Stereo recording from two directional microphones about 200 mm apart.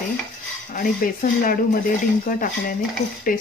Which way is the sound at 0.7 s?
45° left (ahead or behind).